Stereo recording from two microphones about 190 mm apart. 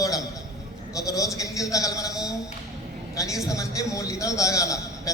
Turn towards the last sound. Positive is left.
turn(degrees=15)  # may be behind; listen again after turning